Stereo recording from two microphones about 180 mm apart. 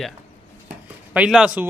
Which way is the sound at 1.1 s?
5° right (ahead or behind).